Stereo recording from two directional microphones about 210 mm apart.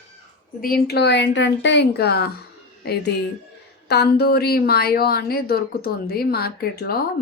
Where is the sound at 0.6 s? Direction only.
45° left (ahead or behind).